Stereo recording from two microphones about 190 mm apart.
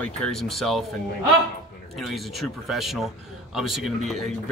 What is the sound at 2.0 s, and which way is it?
Speech, centre (ahead or behind).